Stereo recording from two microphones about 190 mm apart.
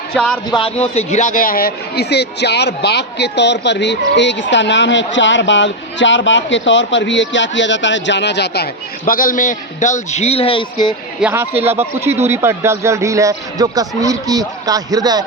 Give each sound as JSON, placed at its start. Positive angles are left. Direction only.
{"t": 0.1, "sound": "speech", "side_deg": 5}
{"t": 0.5, "sound": "speech", "side_deg": 30}
{"t": 11.2, "sound": "speech", "side_deg": -10}